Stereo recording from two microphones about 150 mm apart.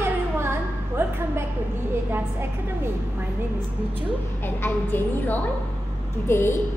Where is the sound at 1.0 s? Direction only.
15° right (ahead or behind).